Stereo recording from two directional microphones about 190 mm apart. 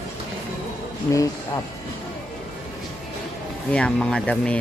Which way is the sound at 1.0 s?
15° left (ahead or behind).